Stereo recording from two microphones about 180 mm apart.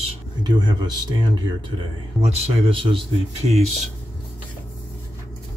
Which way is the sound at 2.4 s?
30° right (ahead or behind).